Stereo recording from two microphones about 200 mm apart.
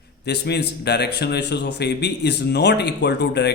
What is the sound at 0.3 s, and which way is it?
A man's voice, 55° left (ahead or behind).